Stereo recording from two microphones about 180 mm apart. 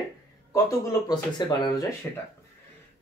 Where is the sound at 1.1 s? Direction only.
25° left (ahead or behind).